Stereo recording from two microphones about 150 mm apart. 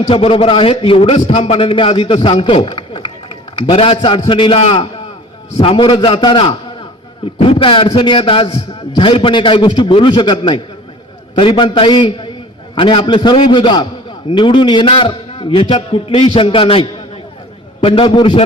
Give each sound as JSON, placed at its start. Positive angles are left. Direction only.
{"t": 0.1, "sound": "a man's voice", "side_deg": 40}